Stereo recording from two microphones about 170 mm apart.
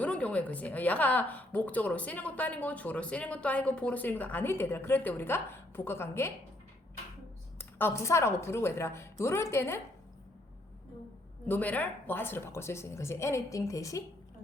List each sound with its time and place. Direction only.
0.0 s a woman's voice: 10° left (ahead or behind)
7.6 s a woman's voice: 15° left (ahead or behind)
11.4 s a woman's voice: 10° left (ahead or behind)